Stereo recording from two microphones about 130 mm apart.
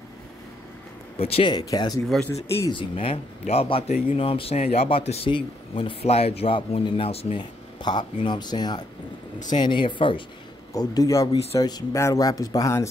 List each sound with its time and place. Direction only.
1.1 s speech: 45° left (ahead or behind)
1.5 s speech: 35° left (ahead or behind)
2.0 s speech: 5° left (ahead or behind)
2.7 s speech: 45° left (ahead or behind)
7.8 s speech: 35° left (ahead or behind)
10.7 s speech: 30° left (ahead or behind)